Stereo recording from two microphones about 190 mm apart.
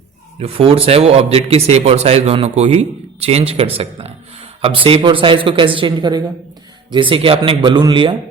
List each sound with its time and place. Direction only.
0.3 s a man's voice: 30° right (ahead or behind)